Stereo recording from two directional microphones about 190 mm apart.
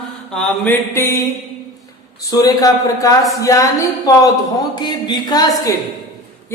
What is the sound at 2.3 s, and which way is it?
Speech, 20° left (ahead or behind).